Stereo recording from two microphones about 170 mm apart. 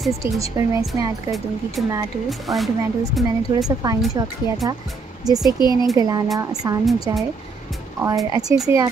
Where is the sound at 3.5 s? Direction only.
20° right (ahead or behind).